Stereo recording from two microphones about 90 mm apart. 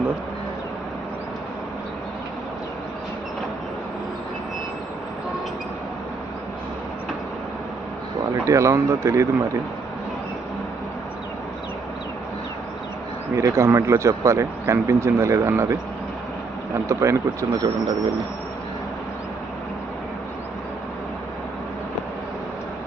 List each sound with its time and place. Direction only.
8.4 s speech: 35° right (ahead or behind)
13.3 s speech: 30° right (ahead or behind)